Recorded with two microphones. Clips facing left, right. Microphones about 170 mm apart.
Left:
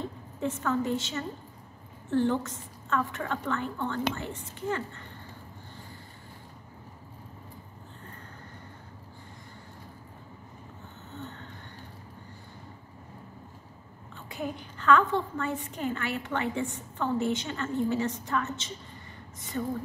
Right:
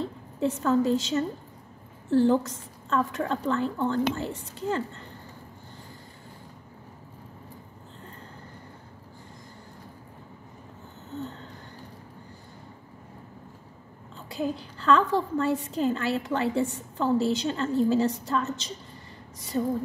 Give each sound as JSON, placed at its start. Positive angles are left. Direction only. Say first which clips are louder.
{"t": 0.0, "sound": "a woman's voice", "louder": "right 5 dB", "side_deg": -35}
{"t": 14.3, "sound": "a woman's voice", "louder": "right 5 dB", "side_deg": -35}